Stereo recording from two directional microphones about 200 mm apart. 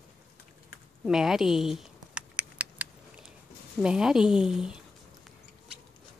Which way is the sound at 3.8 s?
5° right (ahead or behind).